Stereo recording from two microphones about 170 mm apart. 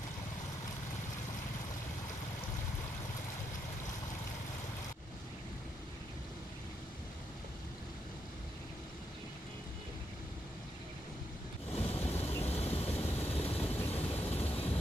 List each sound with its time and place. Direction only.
11.7 s vehicle: 35° left (ahead or behind)
13.6 s vehicle: 10° left (ahead or behind)
13.9 s vehicle: 35° left (ahead or behind)